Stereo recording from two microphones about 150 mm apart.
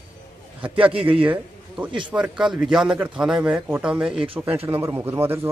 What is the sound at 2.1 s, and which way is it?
Speech, 5° right (ahead or behind).